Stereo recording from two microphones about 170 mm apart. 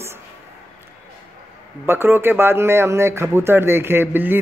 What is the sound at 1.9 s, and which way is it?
Speech, 10° right (ahead or behind).